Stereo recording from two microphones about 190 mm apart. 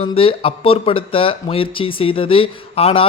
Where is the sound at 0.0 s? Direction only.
30° left (ahead or behind).